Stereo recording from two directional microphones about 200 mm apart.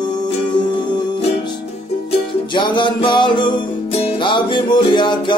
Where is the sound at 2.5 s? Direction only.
25° left (ahead or behind).